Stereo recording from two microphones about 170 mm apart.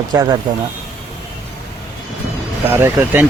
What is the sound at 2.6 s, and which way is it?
Speech, 10° right (ahead or behind).